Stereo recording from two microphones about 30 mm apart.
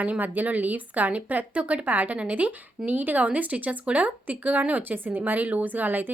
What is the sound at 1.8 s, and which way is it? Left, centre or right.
Speech, right.